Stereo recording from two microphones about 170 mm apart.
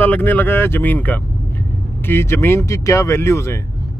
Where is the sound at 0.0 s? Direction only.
10° left (ahead or behind).